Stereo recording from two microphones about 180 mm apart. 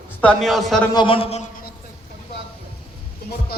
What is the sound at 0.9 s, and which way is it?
Speech, 30° left (ahead or behind).